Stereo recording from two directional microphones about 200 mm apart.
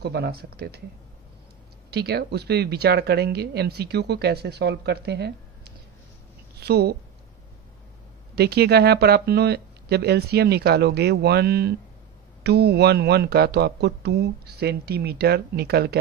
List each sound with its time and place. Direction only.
0.0 s speech: 55° right (ahead or behind)
1.9 s a woman's voice: 55° right (ahead or behind)
8.4 s speech: 55° right (ahead or behind)